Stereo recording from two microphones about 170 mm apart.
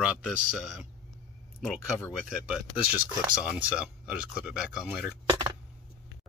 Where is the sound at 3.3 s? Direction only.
5° right (ahead or behind).